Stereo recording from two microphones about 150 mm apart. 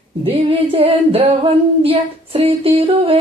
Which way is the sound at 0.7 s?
40° right (ahead or behind).